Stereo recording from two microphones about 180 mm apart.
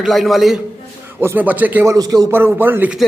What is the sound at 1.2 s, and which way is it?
A man's voice, 10° right (ahead or behind).